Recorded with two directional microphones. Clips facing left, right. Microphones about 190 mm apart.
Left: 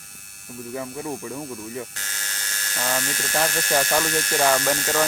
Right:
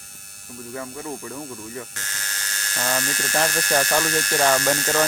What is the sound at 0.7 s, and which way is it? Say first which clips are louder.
Speech: left 2 dB; 15° left (ahead or behind).